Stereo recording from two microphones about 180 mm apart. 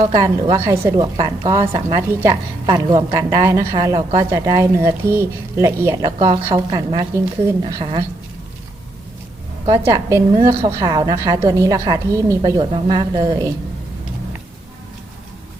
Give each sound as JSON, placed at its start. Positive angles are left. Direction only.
{"t": 0.0, "sound": "a woman's voice", "side_deg": -30}
{"t": 0.6, "sound": "a woman's voice", "side_deg": -15}
{"t": 1.6, "sound": "a woman's voice", "side_deg": -30}
{"t": 9.7, "sound": "a woman's voice", "side_deg": -15}